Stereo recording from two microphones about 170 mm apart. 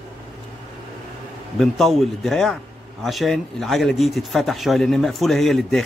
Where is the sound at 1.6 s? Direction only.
Centre (ahead or behind).